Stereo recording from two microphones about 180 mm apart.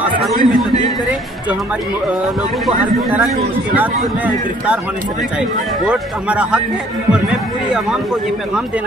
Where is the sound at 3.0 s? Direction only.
Centre (ahead or behind).